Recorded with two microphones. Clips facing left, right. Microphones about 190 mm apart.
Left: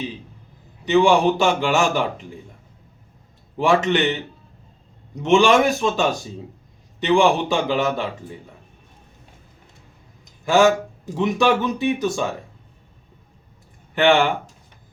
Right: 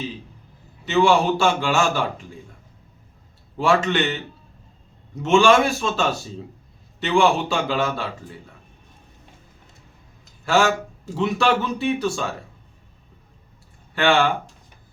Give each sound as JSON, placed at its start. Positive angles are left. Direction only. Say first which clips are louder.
{"t": 0.9, "sound": "a man's voice", "louder": "left 2 dB", "side_deg": 15}
{"t": 3.6, "sound": "a man's voice", "louder": "left 2 dB", "side_deg": 15}
{"t": 5.2, "sound": "a man's voice", "louder": "left 1 dB", "side_deg": 15}
{"t": 10.4, "sound": "a man's voice", "louder": "left 4 dB", "side_deg": 15}
{"t": 13.9, "sound": "speech", "louder": "left 2 dB", "side_deg": 20}